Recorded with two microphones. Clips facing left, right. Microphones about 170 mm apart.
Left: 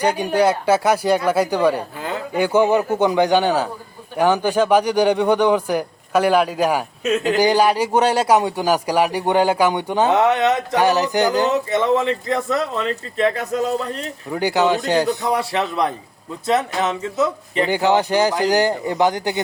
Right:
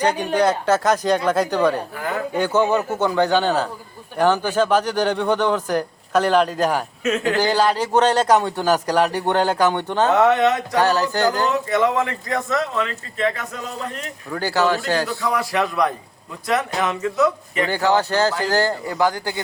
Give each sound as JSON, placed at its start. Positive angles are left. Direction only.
{"t": 0.0, "sound": "speech", "side_deg": 10}
{"t": 2.0, "sound": "a sound", "side_deg": 20}
{"t": 2.3, "sound": "speech", "side_deg": 10}
{"t": 14.3, "sound": "speech", "side_deg": 15}
{"t": 15.2, "sound": "speech", "side_deg": 30}
{"t": 17.7, "sound": "speech", "side_deg": 15}